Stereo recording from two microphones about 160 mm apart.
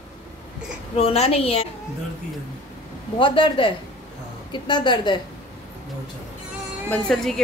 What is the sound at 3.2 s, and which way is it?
A woman's voice, 30° left (ahead or behind).